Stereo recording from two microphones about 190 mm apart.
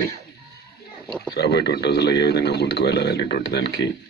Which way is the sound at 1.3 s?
60° left (ahead or behind).